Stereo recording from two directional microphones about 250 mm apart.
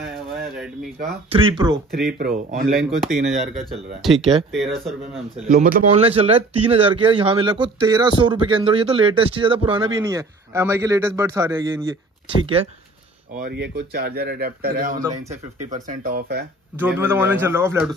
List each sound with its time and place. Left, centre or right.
1.3 s speech: centre
2.0 s speech: right
2.8 s speech: centre
5.5 s a man's voice: right; by 11.7 s centre
13.4 s speech: right
16.7 s a man's voice: centre